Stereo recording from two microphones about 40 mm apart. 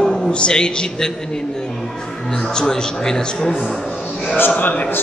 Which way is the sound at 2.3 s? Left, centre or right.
Centre.